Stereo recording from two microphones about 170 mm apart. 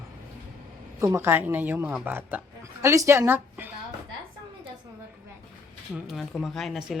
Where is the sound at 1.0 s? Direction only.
15° right (ahead or behind).